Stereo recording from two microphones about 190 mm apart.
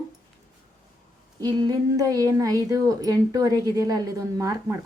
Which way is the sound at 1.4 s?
20° right (ahead or behind).